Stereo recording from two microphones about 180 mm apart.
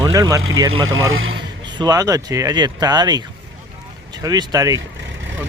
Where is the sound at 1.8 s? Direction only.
20° right (ahead or behind).